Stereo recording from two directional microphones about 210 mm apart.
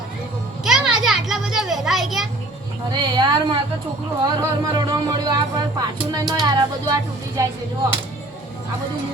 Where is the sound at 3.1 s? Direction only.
20° right (ahead or behind).